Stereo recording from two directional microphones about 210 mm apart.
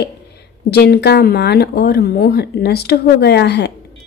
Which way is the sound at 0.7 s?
50° left (ahead or behind).